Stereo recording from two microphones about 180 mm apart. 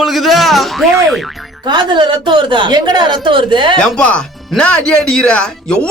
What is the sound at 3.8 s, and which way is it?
Speech, 5° left (ahead or behind).